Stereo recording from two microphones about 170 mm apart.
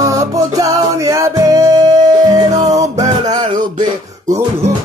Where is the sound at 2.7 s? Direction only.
45° right (ahead or behind).